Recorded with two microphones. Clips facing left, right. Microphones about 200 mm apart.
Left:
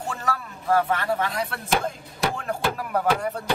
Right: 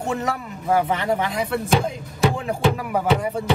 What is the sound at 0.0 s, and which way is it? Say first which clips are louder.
Speech: right 5 dB; 20° right (ahead or behind).